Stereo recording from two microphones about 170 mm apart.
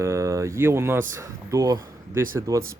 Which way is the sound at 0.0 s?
15° right (ahead or behind).